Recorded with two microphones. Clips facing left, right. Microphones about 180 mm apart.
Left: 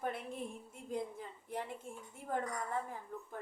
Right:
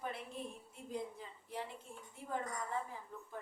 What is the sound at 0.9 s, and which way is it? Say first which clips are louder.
A woman's voice: left 3 dB; 50° left (ahead or behind).